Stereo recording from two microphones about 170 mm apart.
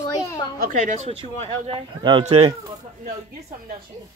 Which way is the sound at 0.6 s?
45° right (ahead or behind).